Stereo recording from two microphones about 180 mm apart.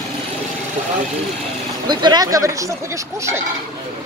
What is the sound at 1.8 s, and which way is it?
Speech, 25° right (ahead or behind).